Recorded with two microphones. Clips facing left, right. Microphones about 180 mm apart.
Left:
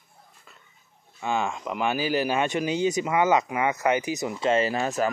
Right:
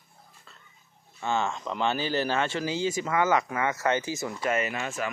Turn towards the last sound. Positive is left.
turn(degrees=40)  # may be behind; listen again after turning